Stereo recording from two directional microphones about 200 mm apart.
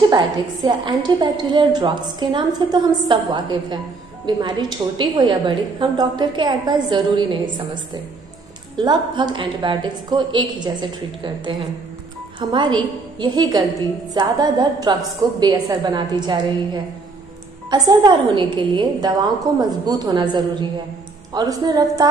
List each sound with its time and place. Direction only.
0.1 s a woman's voice: 25° right (ahead or behind)